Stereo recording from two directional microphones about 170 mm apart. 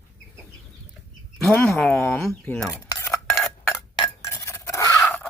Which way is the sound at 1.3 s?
5° left (ahead or behind).